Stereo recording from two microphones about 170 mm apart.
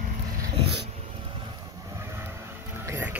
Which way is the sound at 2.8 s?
15° right (ahead or behind).